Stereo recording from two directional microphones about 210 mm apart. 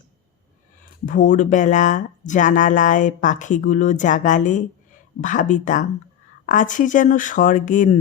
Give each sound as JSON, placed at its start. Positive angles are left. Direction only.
{"t": 1.0, "sound": "speech", "side_deg": 40}